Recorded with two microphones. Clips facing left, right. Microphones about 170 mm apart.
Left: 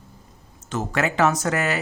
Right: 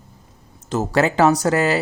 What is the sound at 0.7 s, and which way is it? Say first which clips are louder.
Speech: right 6 dB; 35° right (ahead or behind).